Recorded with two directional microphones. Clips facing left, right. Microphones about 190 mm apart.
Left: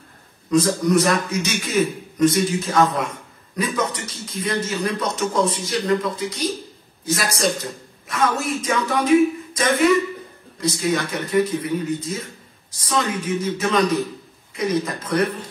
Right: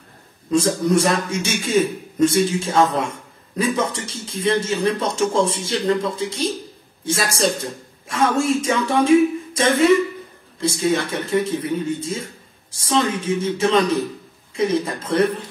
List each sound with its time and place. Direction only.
0.5 s a man's voice: 30° right (ahead or behind)